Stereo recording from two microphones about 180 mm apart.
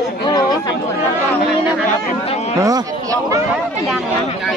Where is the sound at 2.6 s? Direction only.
20° right (ahead or behind).